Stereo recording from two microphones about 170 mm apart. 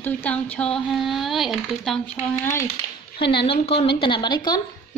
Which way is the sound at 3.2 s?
30° left (ahead or behind).